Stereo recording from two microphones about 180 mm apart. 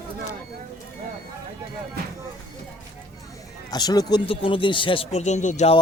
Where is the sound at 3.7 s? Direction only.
20° left (ahead or behind); by 5.8 s 40° left (ahead or behind).